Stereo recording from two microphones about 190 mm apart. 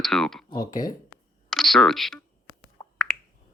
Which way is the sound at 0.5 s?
20° left (ahead or behind).